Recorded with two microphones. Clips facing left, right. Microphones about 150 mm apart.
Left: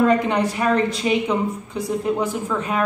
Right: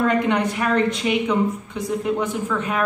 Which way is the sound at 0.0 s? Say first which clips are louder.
Left 2 dB; 30° left (ahead or behind).